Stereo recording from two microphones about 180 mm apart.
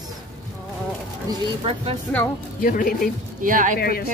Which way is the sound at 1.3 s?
30° right (ahead or behind).